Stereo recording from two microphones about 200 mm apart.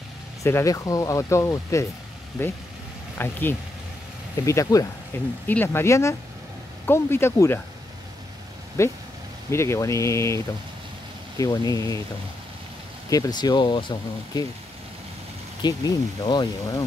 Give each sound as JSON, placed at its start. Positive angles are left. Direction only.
{"t": 0.4, "sound": "speech", "side_deg": 15}
{"t": 8.8, "sound": "speech", "side_deg": 15}
{"t": 13.1, "sound": "speech", "side_deg": 20}
{"t": 15.6, "sound": "speech", "side_deg": 20}